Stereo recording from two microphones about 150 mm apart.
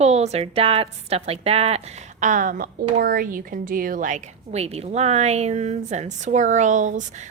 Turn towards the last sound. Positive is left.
turn(degrees=-55)  # may be behind; listen again after turning